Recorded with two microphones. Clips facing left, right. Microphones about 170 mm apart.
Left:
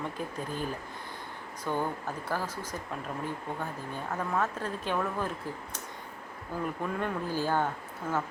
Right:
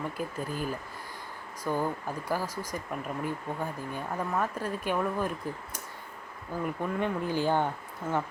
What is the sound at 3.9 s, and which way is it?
Speech, 10° right (ahead or behind).